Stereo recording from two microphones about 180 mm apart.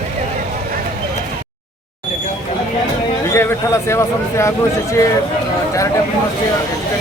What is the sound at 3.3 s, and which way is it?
A man's voice, 15° left (ahead or behind).